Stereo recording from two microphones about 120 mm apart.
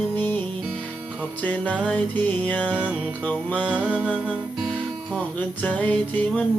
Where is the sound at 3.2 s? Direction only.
10° left (ahead or behind).